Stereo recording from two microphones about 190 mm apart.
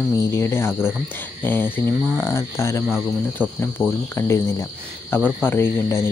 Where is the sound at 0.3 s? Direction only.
15° left (ahead or behind).